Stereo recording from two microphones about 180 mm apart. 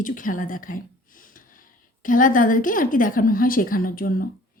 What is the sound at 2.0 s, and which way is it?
A woman's voice, 50° left (ahead or behind).